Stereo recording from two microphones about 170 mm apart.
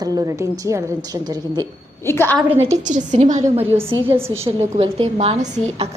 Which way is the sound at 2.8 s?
45° right (ahead or behind).